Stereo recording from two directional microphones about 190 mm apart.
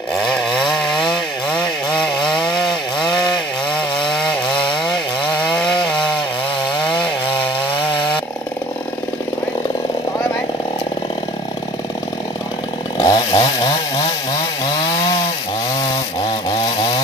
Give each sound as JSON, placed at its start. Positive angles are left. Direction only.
{"t": 0.1, "sound": "chainsaw", "side_deg": 0}
{"t": 2.6, "sound": "chainsaw", "side_deg": 25}
{"t": 4.1, "sound": "chainsaw", "side_deg": 5}
{"t": 12.9, "sound": "chainsaw", "side_deg": 25}
{"t": 16.3, "sound": "a sound", "side_deg": 25}